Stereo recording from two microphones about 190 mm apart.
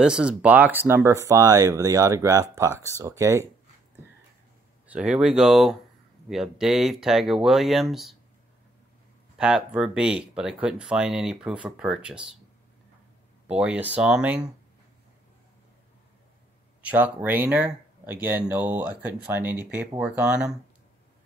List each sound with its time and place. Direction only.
0.0 s speech: 5° right (ahead or behind)
4.8 s speech: 5° right (ahead or behind)
9.4 s speech: 5° right (ahead or behind)
13.5 s speech: 5° right (ahead or behind)
16.8 s speech: 10° right (ahead or behind)